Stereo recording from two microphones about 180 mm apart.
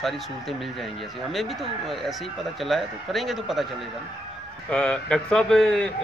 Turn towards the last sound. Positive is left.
turn(degrees=5)  # may be behind; listen again after turning